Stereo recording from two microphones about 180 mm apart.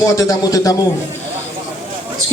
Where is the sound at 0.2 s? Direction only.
15° left (ahead or behind).